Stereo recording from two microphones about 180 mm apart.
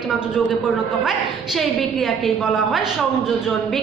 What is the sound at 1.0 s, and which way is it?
A woman's voice, centre (ahead or behind).